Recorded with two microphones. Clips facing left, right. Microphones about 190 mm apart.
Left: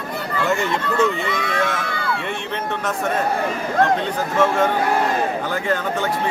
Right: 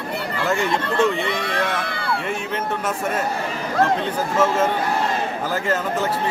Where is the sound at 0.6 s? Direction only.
30° right (ahead or behind).